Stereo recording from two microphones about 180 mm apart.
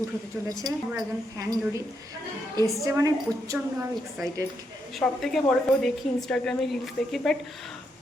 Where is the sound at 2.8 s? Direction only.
20° right (ahead or behind).